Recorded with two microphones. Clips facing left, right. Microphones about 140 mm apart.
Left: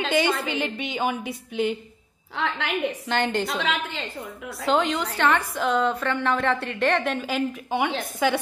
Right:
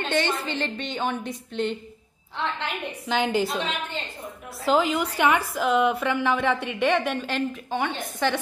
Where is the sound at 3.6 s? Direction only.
90° left.